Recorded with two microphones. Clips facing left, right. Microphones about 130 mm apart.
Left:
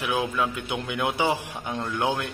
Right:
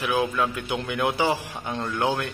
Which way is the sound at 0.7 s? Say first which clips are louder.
Right 2 dB; 15° left (ahead or behind).